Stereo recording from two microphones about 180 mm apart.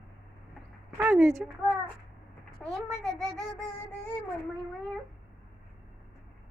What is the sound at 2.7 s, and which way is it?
Speech, centre (ahead or behind).